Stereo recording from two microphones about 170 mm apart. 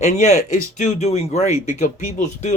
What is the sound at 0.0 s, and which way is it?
Speech, 40° left (ahead or behind).